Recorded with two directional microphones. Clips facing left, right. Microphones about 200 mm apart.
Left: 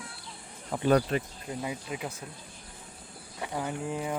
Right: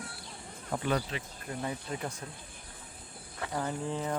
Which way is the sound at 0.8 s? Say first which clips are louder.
Left 9 dB; 45° left (ahead or behind).